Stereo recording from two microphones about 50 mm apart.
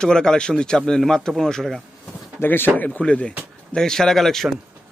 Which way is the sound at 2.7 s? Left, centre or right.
Left.